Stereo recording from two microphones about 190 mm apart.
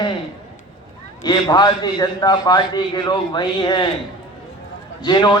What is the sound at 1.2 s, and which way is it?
A man's voice, 20° left (ahead or behind).